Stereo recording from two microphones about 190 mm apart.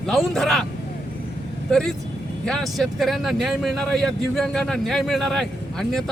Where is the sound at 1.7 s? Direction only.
5° left (ahead or behind).